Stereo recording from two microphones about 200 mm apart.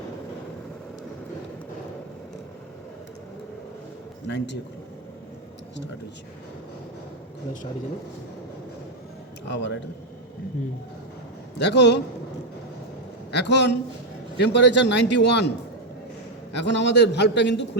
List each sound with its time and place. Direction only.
4.3 s a man's voice: 60° left (ahead or behind)
9.5 s a man's voice: 60° left (ahead or behind)
11.6 s a man's voice: 60° left (ahead or behind)
13.3 s a man's voice: 60° left (ahead or behind)
16.6 s a man's voice: 60° left (ahead or behind)